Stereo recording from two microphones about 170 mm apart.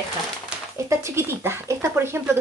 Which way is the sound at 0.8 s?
15° right (ahead or behind).